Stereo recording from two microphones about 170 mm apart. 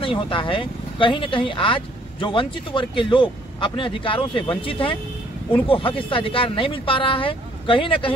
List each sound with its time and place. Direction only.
0.0 s speech: 30° left (ahead or behind)